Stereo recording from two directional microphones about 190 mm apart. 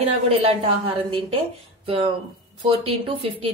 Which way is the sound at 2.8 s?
30° right (ahead or behind).